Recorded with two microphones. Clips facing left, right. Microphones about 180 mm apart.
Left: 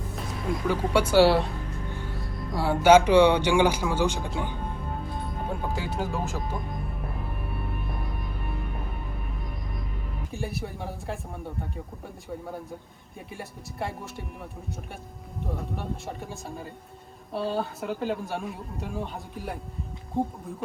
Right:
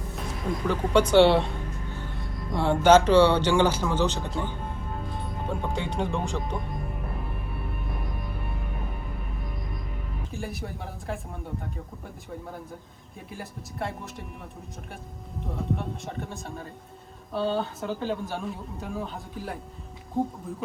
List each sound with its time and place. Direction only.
0.7 s speech: 10° left (ahead or behind)
2.6 s speech: 10° left (ahead or behind)
5.6 s speech: 5° left (ahead or behind)
10.3 s speech: centre (ahead or behind)
13.3 s speech: centre (ahead or behind)
15.5 s speech: centre (ahead or behind)